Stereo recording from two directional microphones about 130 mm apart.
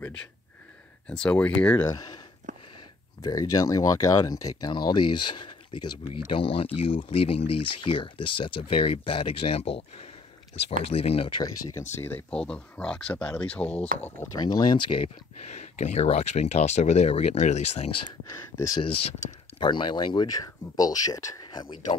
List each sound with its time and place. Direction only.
1.0 s speech: 5° left (ahead or behind)
1.8 s speech: 30° left (ahead or behind)
3.2 s speech: 30° left (ahead or behind); by 9.8 s 45° left (ahead or behind)
10.9 s speech: 50° left (ahead or behind)
12.0 s speech: 10° left (ahead or behind)
14.4 s speech: 35° left (ahead or behind)
15.5 s speech: 60° left (ahead or behind)
18.8 s speech: 45° left (ahead or behind)